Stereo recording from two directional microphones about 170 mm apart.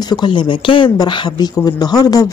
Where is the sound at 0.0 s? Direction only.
25° left (ahead or behind).